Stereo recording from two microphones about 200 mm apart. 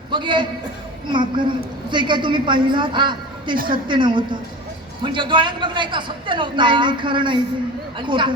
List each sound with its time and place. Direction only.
0.1 s a man's voice: 25° right (ahead or behind)